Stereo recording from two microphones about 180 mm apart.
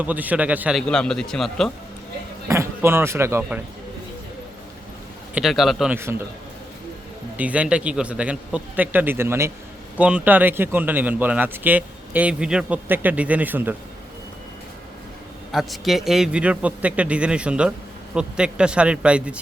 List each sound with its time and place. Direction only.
0.0 s a man's voice: 10° right (ahead or behind)
2.5 s speech: 15° right (ahead or behind)
5.3 s a man's voice: centre (ahead or behind)
6.0 s speech: 15° right (ahead or behind)
7.3 s speech: 10° right (ahead or behind)
15.5 s a man's voice: centre (ahead or behind)